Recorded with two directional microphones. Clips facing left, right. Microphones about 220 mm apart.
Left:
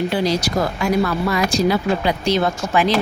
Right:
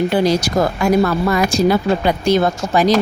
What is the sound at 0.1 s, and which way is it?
Speech, 50° right (ahead or behind).